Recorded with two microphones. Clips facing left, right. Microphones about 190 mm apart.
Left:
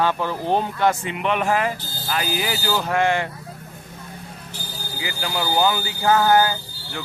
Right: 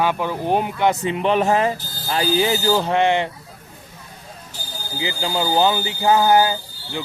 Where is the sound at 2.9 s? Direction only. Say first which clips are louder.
Right 3 dB; 20° right (ahead or behind).